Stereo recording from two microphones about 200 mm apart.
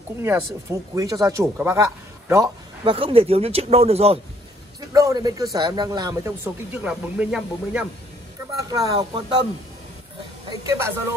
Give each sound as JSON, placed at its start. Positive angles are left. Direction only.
{"t": 0.2, "sound": "speech", "side_deg": -15}
{"t": 4.7, "sound": "speech", "side_deg": -20}
{"t": 8.5, "sound": "speech", "side_deg": -20}